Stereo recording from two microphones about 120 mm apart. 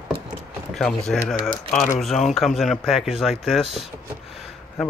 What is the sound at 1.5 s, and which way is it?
Speech, 15° left (ahead or behind).